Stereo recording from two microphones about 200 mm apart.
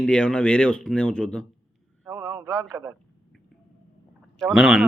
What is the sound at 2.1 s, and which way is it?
Speech, 15° right (ahead or behind).